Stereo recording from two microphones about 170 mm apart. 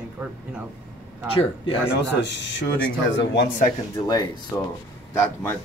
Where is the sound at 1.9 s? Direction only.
90° left.